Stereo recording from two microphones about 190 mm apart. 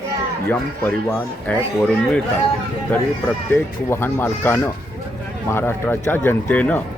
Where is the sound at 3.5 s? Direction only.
10° left (ahead or behind).